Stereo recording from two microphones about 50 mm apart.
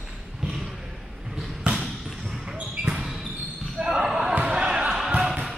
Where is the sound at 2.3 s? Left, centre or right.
Centre.